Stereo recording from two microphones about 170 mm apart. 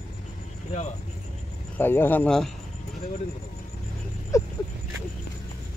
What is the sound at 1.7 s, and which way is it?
Speech, 10° left (ahead or behind).